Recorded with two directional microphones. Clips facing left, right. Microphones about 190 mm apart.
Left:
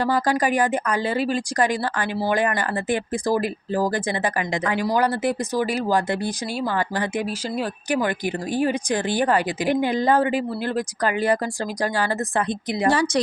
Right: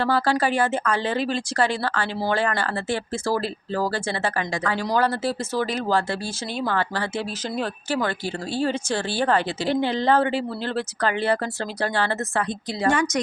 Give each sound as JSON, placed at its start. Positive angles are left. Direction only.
{"t": 0.0, "sound": "speech", "side_deg": 15}